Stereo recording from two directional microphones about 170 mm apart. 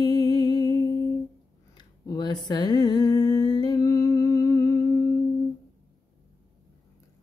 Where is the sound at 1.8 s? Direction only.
25° left (ahead or behind).